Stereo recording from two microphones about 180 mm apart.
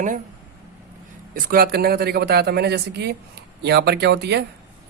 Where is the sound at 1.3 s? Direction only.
55° right (ahead or behind).